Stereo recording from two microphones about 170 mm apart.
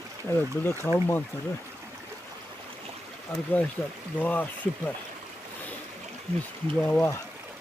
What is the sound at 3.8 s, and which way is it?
Speech, centre (ahead or behind).